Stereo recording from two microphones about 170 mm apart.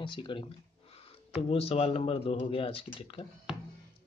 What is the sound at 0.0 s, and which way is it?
Speech, 30° left (ahead or behind).